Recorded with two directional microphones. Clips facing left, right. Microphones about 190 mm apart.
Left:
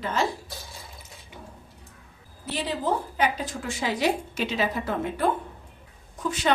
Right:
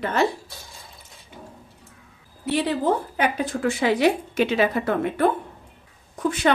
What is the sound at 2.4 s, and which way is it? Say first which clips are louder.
Speech: right 6 dB; 60° right (ahead or behind).